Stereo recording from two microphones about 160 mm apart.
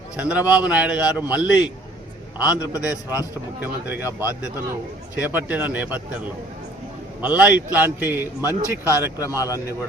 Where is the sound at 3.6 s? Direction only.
10° right (ahead or behind).